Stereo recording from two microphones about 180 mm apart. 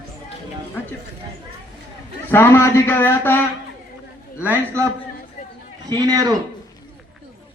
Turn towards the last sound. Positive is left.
turn(degrees=-20)  # may be behind; listen again after turning